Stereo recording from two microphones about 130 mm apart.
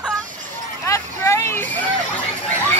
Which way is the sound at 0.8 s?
20° left (ahead or behind).